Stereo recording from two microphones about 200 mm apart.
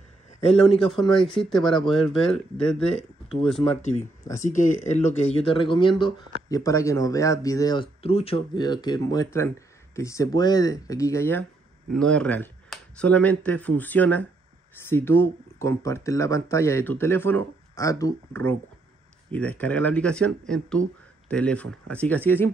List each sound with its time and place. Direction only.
0.6 s speech: centre (ahead or behind)
2.0 s speech: 30° left (ahead or behind)
3.6 s speech: 35° left (ahead or behind); by 22.5 s 10° left (ahead or behind)